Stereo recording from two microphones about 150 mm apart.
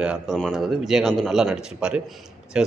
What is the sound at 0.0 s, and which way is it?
A man's voice, 5° right (ahead or behind).